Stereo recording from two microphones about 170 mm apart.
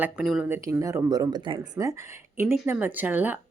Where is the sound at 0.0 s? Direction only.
5° right (ahead or behind).